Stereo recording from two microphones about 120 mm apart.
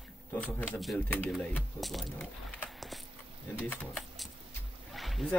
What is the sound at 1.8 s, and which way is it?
Speech, centre (ahead or behind).